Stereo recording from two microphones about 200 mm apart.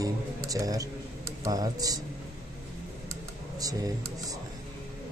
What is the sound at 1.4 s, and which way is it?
Speech, 20° right (ahead or behind).